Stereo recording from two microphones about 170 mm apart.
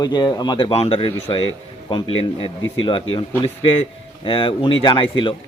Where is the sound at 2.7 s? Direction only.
30° left (ahead or behind).